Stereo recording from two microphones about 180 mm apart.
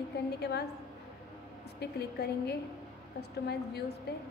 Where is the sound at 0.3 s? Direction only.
65° left (ahead or behind).